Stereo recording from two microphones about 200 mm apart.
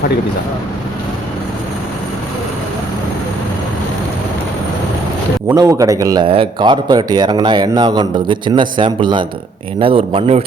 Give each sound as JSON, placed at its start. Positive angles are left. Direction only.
{"t": 5.5, "sound": "speech", "side_deg": -15}